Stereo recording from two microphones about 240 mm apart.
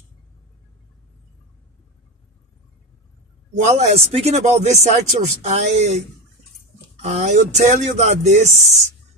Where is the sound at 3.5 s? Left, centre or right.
Right.